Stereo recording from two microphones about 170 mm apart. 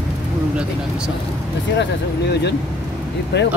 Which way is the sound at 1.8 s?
90° left.